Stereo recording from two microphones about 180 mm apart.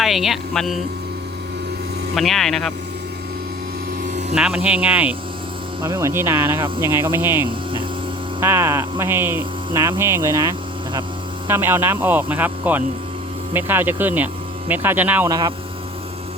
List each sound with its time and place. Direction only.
0.0 s speech: centre (ahead or behind)
2.1 s speech: centre (ahead or behind)
4.4 s speech: 5° right (ahead or behind)
7.4 s hum: 25° right (ahead or behind)
8.4 s speech: 15° right (ahead or behind)
15.3 s speech: 20° right (ahead or behind)